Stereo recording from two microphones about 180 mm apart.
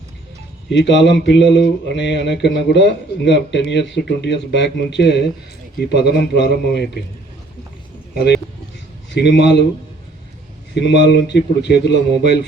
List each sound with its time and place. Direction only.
0.7 s a man's voice: 80° left
9.1 s a man's voice: 70° left (ahead or behind)
10.8 s a man's voice: 70° left (ahead or behind)